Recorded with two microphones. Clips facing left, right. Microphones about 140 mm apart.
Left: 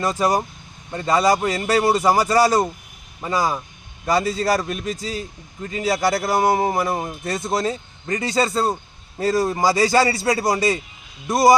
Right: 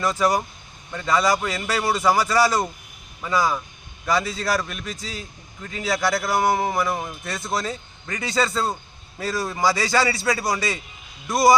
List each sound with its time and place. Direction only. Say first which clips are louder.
0.0 s a man's voice: left 1 dB; 40° left (ahead or behind)